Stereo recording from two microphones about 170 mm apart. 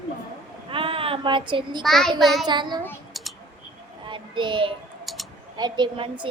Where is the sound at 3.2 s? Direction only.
Centre (ahead or behind).